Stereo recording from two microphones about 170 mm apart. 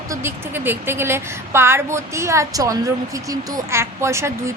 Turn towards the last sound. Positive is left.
turn(degrees=-15)  # may be behind; listen again after turning